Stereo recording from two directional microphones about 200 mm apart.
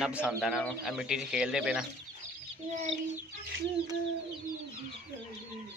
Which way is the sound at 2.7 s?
35° right (ahead or behind).